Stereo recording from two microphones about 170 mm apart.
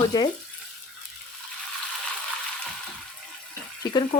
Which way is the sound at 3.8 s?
25° left (ahead or behind).